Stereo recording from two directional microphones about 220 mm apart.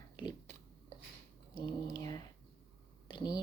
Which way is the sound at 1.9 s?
15° left (ahead or behind).